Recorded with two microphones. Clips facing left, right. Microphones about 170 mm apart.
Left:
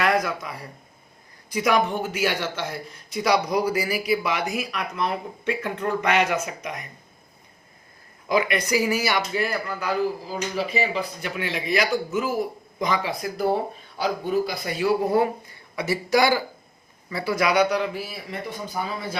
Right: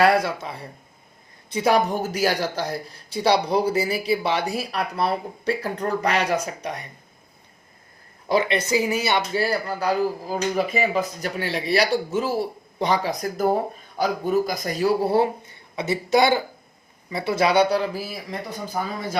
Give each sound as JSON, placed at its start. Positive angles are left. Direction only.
{"t": 0.0, "sound": "a sound", "side_deg": -30}
{"t": 1.5, "sound": "speech", "side_deg": -30}
{"t": 8.3, "sound": "speech", "side_deg": -25}
{"t": 10.2, "sound": "speech", "side_deg": -50}